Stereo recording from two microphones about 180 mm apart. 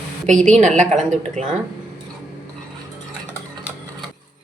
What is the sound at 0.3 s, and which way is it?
A woman's voice, 40° right (ahead or behind).